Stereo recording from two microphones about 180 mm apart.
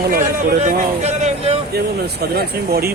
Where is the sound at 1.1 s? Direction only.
35° right (ahead or behind).